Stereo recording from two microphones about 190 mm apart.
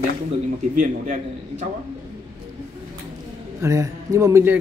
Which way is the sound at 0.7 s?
40° right (ahead or behind).